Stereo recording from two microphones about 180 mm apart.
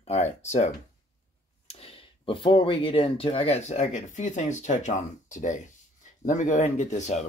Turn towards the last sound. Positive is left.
turn(degrees=40)  # may be behind; listen again after turning